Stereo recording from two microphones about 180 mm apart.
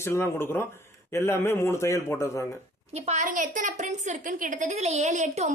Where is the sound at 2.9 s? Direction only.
35° right (ahead or behind).